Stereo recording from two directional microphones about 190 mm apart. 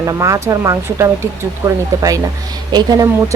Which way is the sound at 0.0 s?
15° right (ahead or behind).